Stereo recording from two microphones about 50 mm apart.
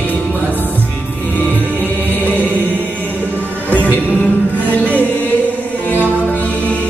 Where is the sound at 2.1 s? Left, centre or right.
Left.